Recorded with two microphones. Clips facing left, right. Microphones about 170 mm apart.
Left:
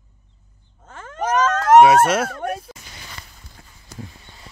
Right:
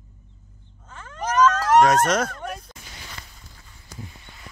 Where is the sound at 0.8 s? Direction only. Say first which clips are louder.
Left 5 dB; 50° left (ahead or behind).